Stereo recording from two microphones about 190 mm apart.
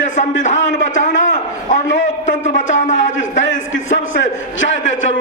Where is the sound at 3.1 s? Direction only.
80° left.